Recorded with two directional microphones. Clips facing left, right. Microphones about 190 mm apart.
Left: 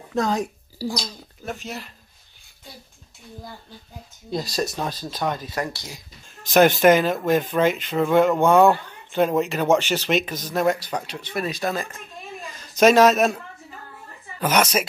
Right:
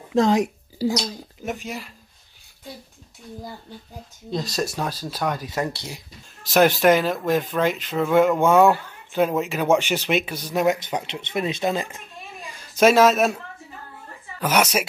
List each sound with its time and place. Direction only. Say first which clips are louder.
0.1 s a woman's voice: right 5 dB; 25° right (ahead or behind)
4.3 s speech: even; 5° left (ahead or behind)
5.6 s a woman's voice: right 2 dB; 25° right (ahead or behind)
6.5 s speech: left 1 dB; centre (ahead or behind); by 12.0 s 20° right (ahead or behind)
12.5 s a man's voice: left 1 dB; 5° right (ahead or behind)
14.4 s speech: even; 5° right (ahead or behind)